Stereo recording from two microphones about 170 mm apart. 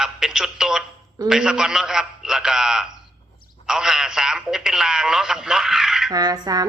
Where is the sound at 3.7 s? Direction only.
5° right (ahead or behind).